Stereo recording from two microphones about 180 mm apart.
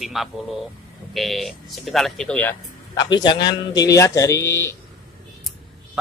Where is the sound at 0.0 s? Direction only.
Centre (ahead or behind).